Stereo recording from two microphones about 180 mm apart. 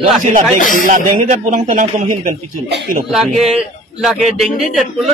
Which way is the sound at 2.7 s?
70° right (ahead or behind).